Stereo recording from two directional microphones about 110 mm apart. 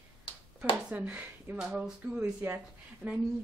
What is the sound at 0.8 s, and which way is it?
A woman's voice, 10° right (ahead or behind).